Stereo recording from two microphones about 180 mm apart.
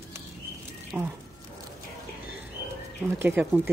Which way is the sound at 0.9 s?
5° right (ahead or behind).